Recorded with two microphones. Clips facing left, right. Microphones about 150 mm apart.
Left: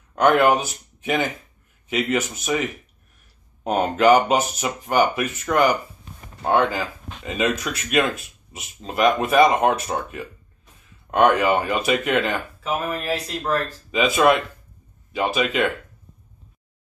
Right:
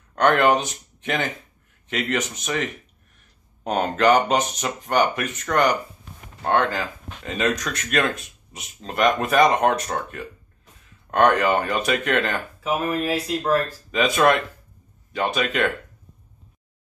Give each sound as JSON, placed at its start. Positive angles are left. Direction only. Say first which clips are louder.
{"t": 0.1, "sound": "speech", "louder": "left 1 dB", "side_deg": 10}
{"t": 12.7, "sound": "speech", "louder": "right 2 dB", "side_deg": -10}
{"t": 13.9, "sound": "speech", "louder": "left 1 dB", "side_deg": 5}